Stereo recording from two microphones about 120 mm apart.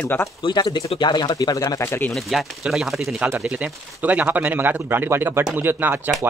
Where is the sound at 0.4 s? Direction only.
40° left (ahead or behind); by 2.1 s 15° left (ahead or behind).